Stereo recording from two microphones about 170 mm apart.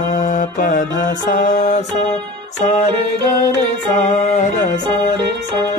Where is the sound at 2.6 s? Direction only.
40° left (ahead or behind).